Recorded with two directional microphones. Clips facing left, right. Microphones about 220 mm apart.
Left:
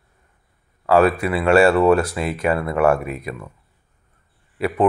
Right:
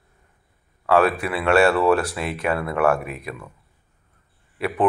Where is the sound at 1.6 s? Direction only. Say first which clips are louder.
Left 3 dB; 25° left (ahead or behind).